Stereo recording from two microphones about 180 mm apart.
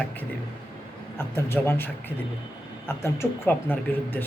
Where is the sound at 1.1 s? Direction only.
15° left (ahead or behind).